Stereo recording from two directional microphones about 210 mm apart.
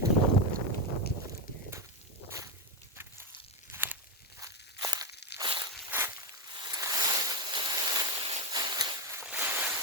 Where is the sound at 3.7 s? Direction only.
10° right (ahead or behind).